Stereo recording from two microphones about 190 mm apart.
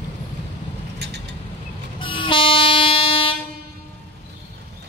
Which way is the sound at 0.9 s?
65° right (ahead or behind).